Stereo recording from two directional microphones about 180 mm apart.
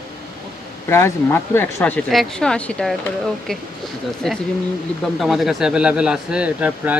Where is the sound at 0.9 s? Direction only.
15° left (ahead or behind).